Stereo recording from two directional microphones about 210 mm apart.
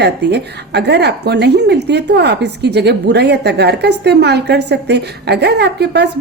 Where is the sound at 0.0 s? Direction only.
50° right (ahead or behind).